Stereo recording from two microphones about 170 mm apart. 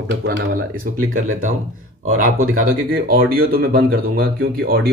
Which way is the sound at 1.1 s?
50° right (ahead or behind).